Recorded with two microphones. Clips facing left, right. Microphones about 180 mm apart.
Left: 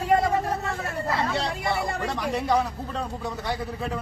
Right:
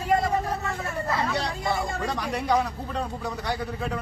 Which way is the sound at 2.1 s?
Centre (ahead or behind).